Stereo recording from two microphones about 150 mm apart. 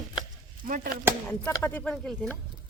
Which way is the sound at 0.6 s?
70° right (ahead or behind).